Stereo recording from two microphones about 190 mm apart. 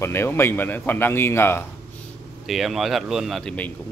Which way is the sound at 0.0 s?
10° left (ahead or behind).